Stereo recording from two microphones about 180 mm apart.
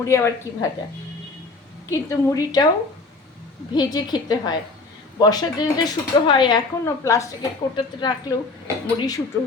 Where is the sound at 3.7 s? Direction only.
20° left (ahead or behind).